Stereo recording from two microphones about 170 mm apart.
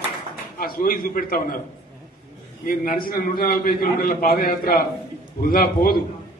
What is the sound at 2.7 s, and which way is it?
A man's voice, 60° left (ahead or behind).